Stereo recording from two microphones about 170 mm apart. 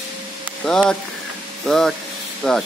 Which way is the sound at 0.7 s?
5° left (ahead or behind).